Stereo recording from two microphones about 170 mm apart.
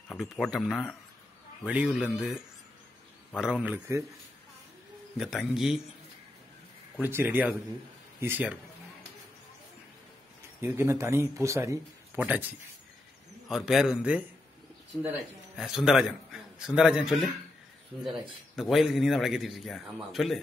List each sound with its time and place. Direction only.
0.1 s a man's voice: centre (ahead or behind)
3.6 s speech: 10° right (ahead or behind)
5.1 s a man's voice: centre (ahead or behind)
7.0 s speech: 10° right (ahead or behind)
10.6 s a man's voice: 15° right (ahead or behind)
18.6 s a man's voice: centre (ahead or behind)